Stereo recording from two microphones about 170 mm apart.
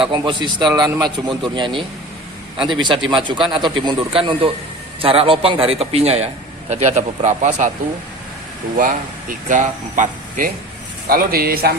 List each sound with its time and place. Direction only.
0.0 s a man's voice: 30° right (ahead or behind); by 7.7 s 45° right (ahead or behind)
8.7 s speech: 50° right (ahead or behind)